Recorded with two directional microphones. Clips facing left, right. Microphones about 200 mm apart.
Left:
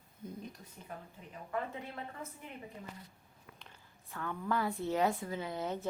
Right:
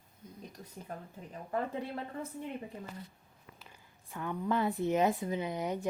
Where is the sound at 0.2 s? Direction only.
55° left (ahead or behind).